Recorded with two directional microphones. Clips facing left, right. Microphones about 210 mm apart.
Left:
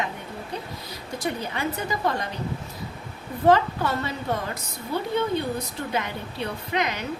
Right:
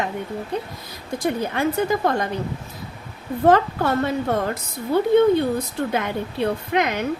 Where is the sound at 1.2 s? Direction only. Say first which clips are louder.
Right 6 dB; 50° right (ahead or behind).